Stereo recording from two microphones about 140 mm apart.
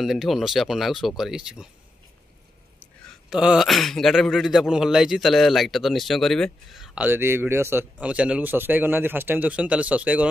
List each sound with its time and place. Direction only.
0.0 s a man's voice: centre (ahead or behind)
3.3 s a man's voice: 5° right (ahead or behind)
7.1 s a man's voice: 15° right (ahead or behind)